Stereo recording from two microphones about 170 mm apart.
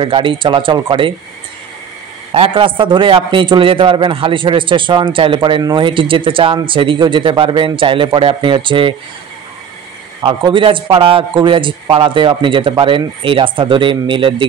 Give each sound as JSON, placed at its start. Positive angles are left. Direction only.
{"t": 0.0, "sound": "a man's voice", "side_deg": -30}
{"t": 2.3, "sound": "a man's voice", "side_deg": -35}
{"t": 10.2, "sound": "a man's voice", "side_deg": -30}